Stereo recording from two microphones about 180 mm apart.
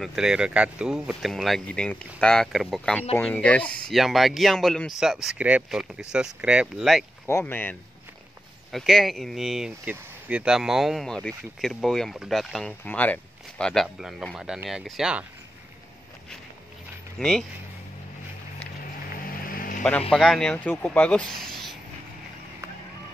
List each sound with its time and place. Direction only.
0.0 s speech: 5° right (ahead or behind)
7.2 s speech: 15° left (ahead or behind)
8.7 s speech: centre (ahead or behind)
17.2 s speech: 5° left (ahead or behind)
19.5 s vehicle: 50° left (ahead or behind)
20.1 s speech: centre (ahead or behind)